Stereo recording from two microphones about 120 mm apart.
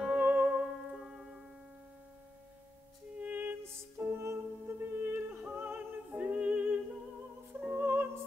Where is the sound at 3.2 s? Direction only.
15° right (ahead or behind).